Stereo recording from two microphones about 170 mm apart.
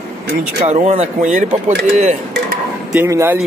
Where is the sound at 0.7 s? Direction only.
40° right (ahead or behind).